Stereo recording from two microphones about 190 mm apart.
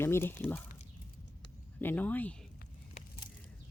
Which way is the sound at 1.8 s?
10° left (ahead or behind).